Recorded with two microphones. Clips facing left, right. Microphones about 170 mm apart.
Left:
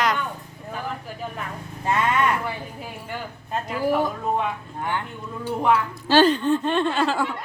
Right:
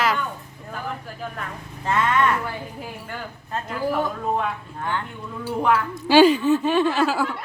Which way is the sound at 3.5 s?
5° left (ahead or behind).